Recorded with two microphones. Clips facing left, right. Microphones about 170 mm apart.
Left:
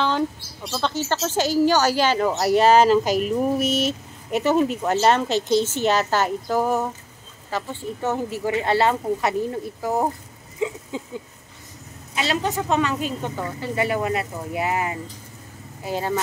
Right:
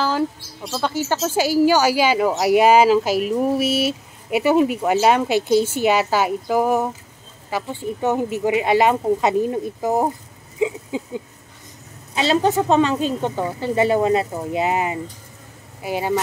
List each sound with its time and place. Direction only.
0.7 s speech: 10° right (ahead or behind)
12.2 s speech: 30° right (ahead or behind); by 16.2 s 10° right (ahead or behind)